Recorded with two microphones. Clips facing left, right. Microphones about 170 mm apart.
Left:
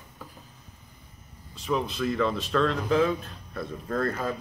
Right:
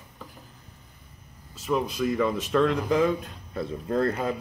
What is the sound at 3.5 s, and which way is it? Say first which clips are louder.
Speech: right 3 dB; 25° right (ahead or behind).